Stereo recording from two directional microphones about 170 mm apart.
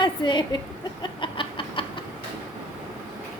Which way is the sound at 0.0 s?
25° left (ahead or behind).